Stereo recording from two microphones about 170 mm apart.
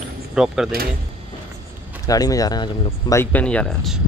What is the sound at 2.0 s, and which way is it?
Speech, 20° left (ahead or behind).